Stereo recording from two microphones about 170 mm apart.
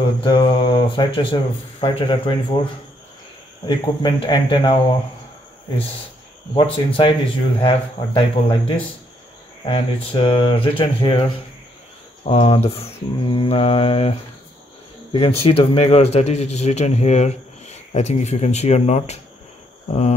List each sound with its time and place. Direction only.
0.2 s speech: 25° left (ahead or behind)
3.6 s speech: 25° left (ahead or behind)
6.5 s speech: 30° left (ahead or behind)
12.3 s speech: 35° left (ahead or behind)
15.4 s speech: 35° left (ahead or behind)